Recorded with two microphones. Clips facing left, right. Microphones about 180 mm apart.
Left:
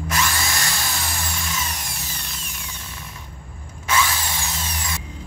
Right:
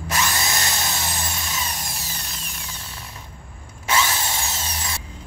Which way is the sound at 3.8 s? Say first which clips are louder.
Even; 25° right (ahead or behind).